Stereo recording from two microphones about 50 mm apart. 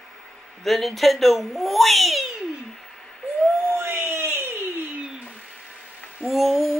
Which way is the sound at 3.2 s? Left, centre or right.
Centre.